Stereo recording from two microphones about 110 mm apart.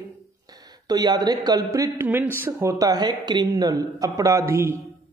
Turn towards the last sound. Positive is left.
turn(degrees=-20)  # may be behind; listen again after turning